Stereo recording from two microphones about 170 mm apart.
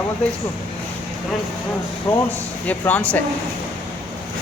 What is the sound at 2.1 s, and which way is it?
Speech, 10° left (ahead or behind).